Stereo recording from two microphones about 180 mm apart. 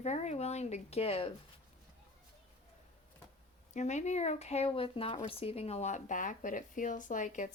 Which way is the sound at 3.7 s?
40° left (ahead or behind).